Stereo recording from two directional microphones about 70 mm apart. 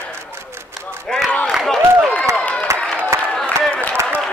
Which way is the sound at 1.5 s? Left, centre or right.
Centre.